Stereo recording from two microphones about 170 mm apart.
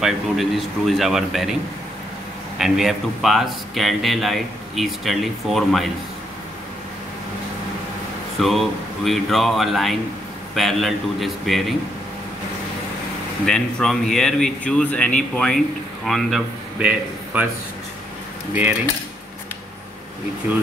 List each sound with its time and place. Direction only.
0.0 s speech: centre (ahead or behind)
2.6 s speech: centre (ahead or behind)
8.4 s speech: centre (ahead or behind)
13.5 s speech: 5° left (ahead or behind)
18.5 s cutlery: 10° right (ahead or behind)